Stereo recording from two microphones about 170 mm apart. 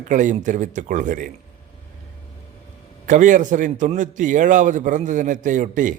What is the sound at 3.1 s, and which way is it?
A man's voice, 50° right (ahead or behind).